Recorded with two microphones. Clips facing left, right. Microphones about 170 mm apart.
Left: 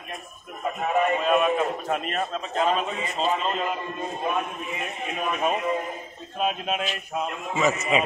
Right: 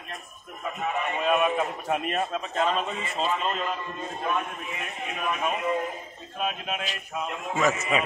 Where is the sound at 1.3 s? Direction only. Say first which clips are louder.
Left 2 dB; 5° right (ahead or behind).